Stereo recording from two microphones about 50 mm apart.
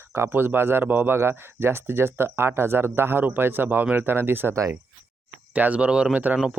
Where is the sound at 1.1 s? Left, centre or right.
Right.